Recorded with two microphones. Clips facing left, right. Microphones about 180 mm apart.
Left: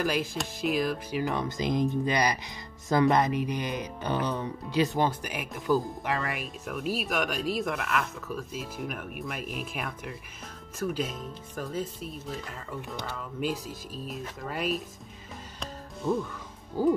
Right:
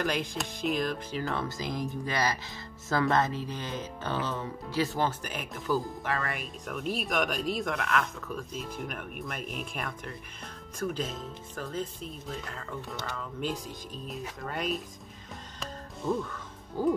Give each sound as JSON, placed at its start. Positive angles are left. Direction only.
{"t": 0.0, "sound": "speech", "side_deg": 5}
{"t": 1.2, "sound": "speech", "side_deg": 15}
{"t": 15.6, "sound": "music", "side_deg": 0}
{"t": 16.8, "sound": "speech", "side_deg": 10}